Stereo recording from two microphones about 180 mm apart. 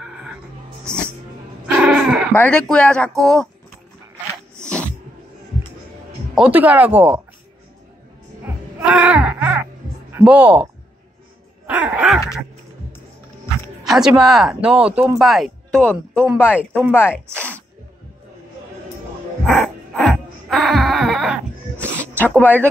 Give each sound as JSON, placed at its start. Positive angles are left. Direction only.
{"t": 0.0, "sound": "music", "side_deg": -5}
{"t": 1.7, "sound": "a sound", "side_deg": -5}
{"t": 2.3, "sound": "speech", "side_deg": 5}
{"t": 6.3, "sound": "speech", "side_deg": -5}
{"t": 8.8, "sound": "wail", "side_deg": -5}
{"t": 10.2, "sound": "speech", "side_deg": -10}
{"t": 13.8, "sound": "speech", "side_deg": -5}
{"t": 19.9, "sound": "baby cry", "side_deg": 0}
{"t": 22.4, "sound": "speech", "side_deg": 10}